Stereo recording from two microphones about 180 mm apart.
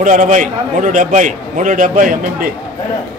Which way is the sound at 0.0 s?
45° right (ahead or behind).